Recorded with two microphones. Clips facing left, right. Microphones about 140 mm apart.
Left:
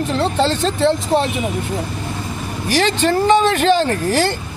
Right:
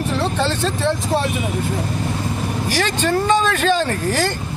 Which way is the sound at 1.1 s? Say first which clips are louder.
Left 2 dB; 15° left (ahead or behind).